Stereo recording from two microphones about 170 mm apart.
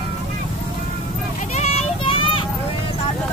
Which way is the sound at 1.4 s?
40° left (ahead or behind).